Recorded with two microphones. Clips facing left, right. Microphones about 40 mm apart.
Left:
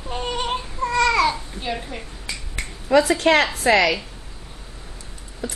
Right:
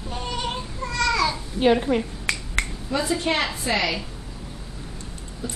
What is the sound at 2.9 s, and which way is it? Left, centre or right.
A woman's voice, left.